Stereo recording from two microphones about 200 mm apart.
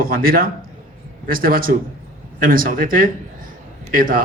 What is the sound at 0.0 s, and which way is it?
A man's voice, 45° right (ahead or behind).